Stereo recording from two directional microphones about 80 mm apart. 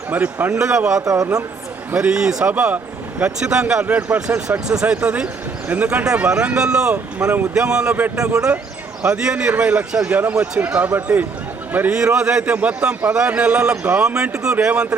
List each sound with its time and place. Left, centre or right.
0.1 s speech: right
0.6 s speech: centre
1.0 s speech: right
1.9 s speech: centre
11.9 s speech: centre